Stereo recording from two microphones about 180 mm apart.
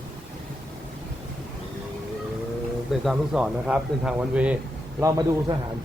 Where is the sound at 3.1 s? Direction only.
5° right (ahead or behind).